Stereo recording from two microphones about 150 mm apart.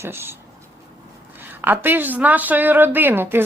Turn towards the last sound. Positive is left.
turn(degrees=-15)  # may be behind; listen again after turning